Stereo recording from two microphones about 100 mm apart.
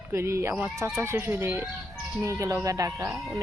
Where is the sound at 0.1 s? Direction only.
30° right (ahead or behind).